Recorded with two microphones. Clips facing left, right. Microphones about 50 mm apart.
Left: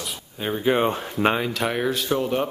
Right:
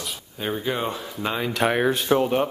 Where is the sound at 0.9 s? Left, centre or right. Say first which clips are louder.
Left 6 dB; left.